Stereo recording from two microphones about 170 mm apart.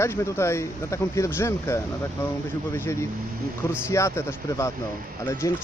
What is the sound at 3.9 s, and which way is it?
Speech, 15° left (ahead or behind).